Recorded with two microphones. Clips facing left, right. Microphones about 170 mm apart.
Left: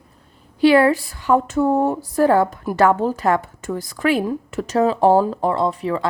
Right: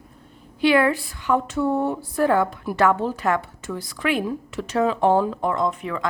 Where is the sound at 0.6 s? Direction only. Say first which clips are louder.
Left 5 dB; 35° left (ahead or behind).